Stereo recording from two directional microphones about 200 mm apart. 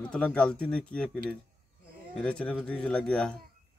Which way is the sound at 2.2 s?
5° left (ahead or behind).